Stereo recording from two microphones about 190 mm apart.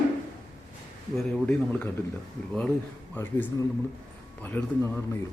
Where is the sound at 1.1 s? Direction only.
5° left (ahead or behind).